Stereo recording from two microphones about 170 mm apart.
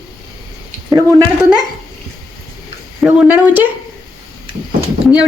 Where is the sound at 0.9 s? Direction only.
15° right (ahead or behind).